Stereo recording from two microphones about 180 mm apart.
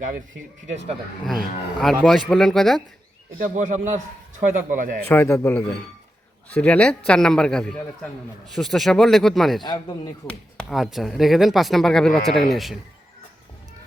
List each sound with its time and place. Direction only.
1.2 s speech: centre (ahead or behind)
3.3 s a man's voice: 45° right (ahead or behind)
5.0 s a man's voice: 10° left (ahead or behind)